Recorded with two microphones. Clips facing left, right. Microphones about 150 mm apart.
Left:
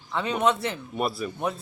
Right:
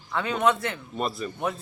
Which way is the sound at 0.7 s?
10° left (ahead or behind).